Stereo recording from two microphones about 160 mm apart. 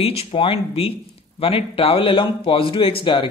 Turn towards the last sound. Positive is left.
turn(degrees=35)  # may be behind; listen again after turning